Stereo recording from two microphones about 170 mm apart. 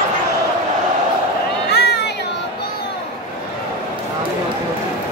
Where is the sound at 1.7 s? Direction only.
80° left.